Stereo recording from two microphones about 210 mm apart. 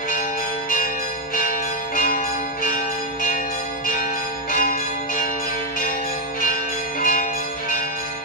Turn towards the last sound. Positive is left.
turn(degrees=40)  # may be behind; listen again after turning